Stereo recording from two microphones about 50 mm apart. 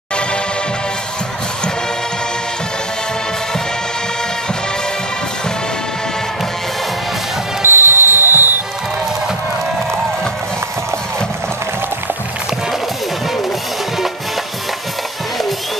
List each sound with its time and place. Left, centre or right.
7.6 s music: right